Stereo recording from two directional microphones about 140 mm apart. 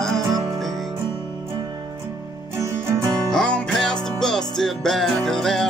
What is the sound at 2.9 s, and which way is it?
Music, 20° right (ahead or behind).